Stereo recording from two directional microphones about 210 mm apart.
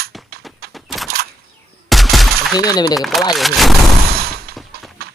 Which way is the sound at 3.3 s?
Centre (ahead or behind).